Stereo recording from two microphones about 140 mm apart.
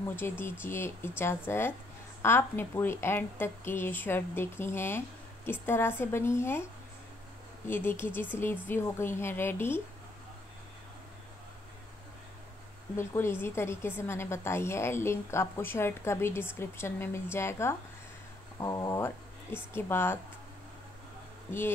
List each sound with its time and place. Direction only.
0.0 s a woman's voice: 15° left (ahead or behind)
7.6 s a woman's voice: 15° left (ahead or behind)
12.9 s a woman's voice: 15° left (ahead or behind)
21.5 s speech: 15° left (ahead or behind)